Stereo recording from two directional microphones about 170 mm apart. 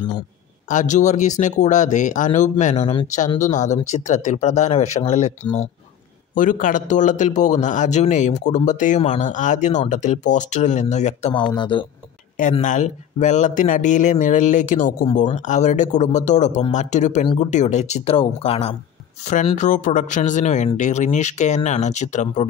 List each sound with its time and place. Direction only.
0.7 s a man's voice: 45° left (ahead or behind)
6.3 s a man's voice: 50° left (ahead or behind)
11.3 s speech: 30° left (ahead or behind)
12.6 s a man's voice: 45° left (ahead or behind)
19.5 s a man's voice: 45° left (ahead or behind)